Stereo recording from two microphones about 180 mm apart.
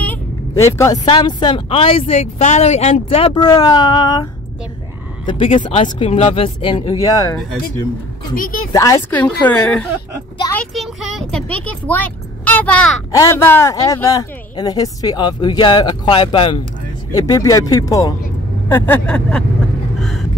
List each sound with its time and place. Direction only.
0.0 s a sound: 15° left (ahead or behind)
1.0 s speech: 25° left (ahead or behind)
8.4 s speech: 50° left (ahead or behind)
8.7 s a woman's voice: 15° left (ahead or behind)
10.5 s a sound: 5° left (ahead or behind)
13.1 s a woman's voice: 15° left (ahead or behind)
20.0 s vehicle: centre (ahead or behind)